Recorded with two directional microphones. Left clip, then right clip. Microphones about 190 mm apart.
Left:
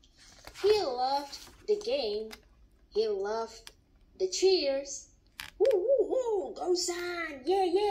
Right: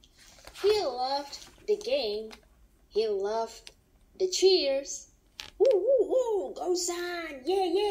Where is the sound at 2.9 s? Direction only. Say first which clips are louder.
Right 2 dB; 35° right (ahead or behind).